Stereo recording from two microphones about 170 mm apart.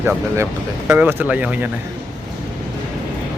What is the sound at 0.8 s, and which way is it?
Speech, 10° right (ahead or behind).